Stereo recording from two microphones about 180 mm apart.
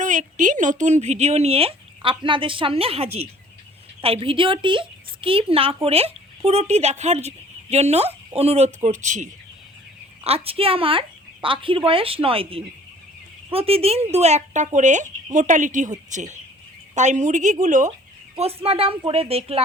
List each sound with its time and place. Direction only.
0.0 s speech: 45° right (ahead or behind)
18.3 s speech: 35° right (ahead or behind)